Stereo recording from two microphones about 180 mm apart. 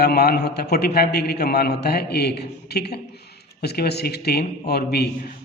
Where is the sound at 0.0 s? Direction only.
60° left (ahead or behind).